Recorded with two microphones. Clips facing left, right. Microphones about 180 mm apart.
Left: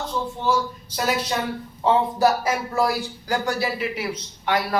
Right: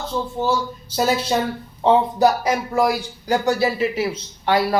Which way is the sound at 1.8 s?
20° right (ahead or behind).